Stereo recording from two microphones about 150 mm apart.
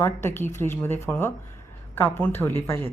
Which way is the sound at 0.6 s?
15° left (ahead or behind).